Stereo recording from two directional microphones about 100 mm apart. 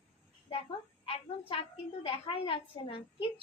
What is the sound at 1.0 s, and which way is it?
A woman's voice, 70° left (ahead or behind).